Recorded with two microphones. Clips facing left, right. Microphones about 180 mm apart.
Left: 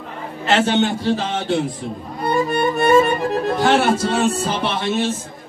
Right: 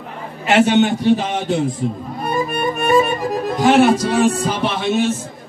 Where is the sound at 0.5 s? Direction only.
15° right (ahead or behind).